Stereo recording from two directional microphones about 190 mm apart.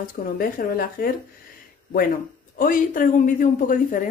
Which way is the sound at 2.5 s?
50° left (ahead or behind).